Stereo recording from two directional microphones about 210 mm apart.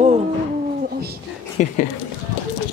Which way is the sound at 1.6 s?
35° left (ahead or behind).